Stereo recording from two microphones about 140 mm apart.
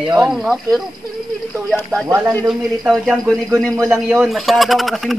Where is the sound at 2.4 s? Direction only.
5° right (ahead or behind).